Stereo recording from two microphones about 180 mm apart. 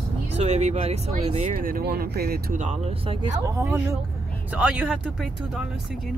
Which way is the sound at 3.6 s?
15° right (ahead or behind).